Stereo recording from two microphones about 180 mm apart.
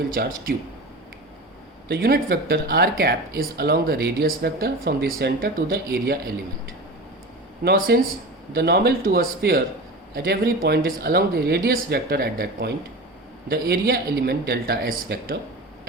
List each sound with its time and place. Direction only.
0.1 s speech: 50° right (ahead or behind)
1.9 s speech: 60° right (ahead or behind)
7.6 s speech: 55° right (ahead or behind)